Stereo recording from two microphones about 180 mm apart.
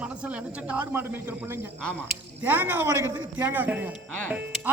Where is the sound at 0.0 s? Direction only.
5° right (ahead or behind).